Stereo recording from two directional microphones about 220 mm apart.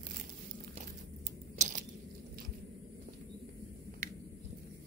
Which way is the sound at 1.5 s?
35° right (ahead or behind).